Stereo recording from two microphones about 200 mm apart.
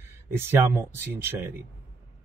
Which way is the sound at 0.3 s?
10° right (ahead or behind).